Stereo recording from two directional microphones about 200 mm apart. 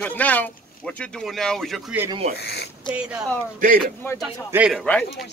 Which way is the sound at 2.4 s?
55° left (ahead or behind).